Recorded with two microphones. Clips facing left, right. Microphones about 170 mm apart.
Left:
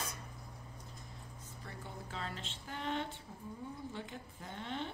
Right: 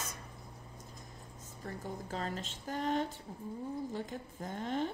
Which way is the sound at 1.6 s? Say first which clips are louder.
Right 7 dB; 40° right (ahead or behind).